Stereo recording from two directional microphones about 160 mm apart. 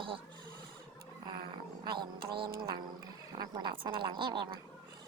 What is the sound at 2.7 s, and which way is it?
Speech, 25° right (ahead or behind).